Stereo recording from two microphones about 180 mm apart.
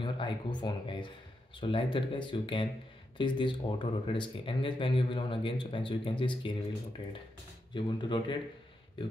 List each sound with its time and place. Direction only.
0.0 s speech: 25° left (ahead or behind)
7.7 s speech: 25° left (ahead or behind)